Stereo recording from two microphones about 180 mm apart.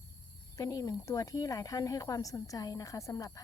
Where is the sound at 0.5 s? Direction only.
20° left (ahead or behind).